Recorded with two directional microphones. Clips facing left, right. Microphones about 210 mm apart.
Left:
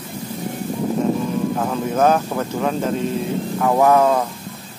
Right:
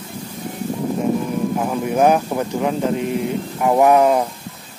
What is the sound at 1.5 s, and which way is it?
Speech, 15° right (ahead or behind).